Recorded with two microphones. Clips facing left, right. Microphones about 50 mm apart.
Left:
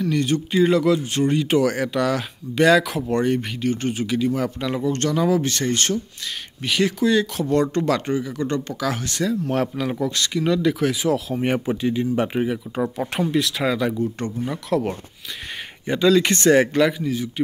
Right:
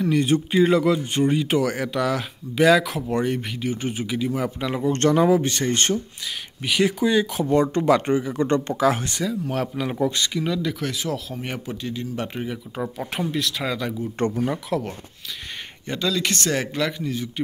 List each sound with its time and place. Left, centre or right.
0.0 s speech: centre
4.8 s speech: right
5.2 s speech: right
6.6 s speech: centre
9.2 s speech: centre
9.8 s speech: centre
10.3 s speech: centre
11.3 s speech: left
12.9 s speech: centre
16.2 s speech: left; by 17.3 s centre